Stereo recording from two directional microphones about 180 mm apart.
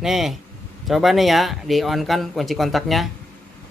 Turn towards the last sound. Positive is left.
turn(degrees=0)  # may be behind; listen again after turning